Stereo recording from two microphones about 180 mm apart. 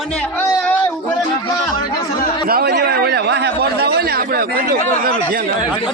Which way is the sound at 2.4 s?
60° right (ahead or behind).